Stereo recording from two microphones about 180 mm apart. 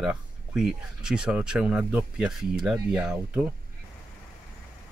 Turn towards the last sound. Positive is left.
turn(degrees=-5)  # may be behind; listen again after turning